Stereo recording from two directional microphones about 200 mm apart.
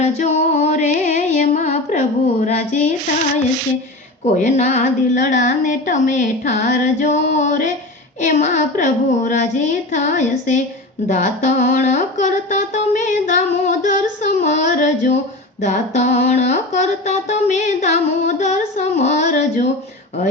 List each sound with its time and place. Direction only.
0.0 s music: 35° left (ahead or behind)
4.4 s humming: 40° left (ahead or behind)